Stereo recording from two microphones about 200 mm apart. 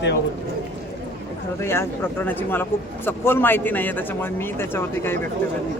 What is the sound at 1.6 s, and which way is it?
A man's voice, 10° left (ahead or behind).